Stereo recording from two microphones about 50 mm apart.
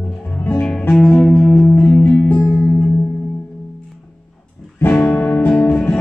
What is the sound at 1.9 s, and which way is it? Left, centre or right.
Music, centre.